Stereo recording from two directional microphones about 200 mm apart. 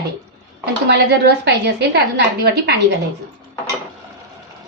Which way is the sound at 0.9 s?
55° right (ahead or behind).